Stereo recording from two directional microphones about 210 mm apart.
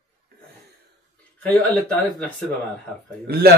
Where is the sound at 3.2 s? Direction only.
45° right (ahead or behind).